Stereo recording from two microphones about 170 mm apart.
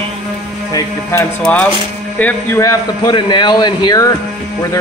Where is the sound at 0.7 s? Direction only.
20° left (ahead or behind).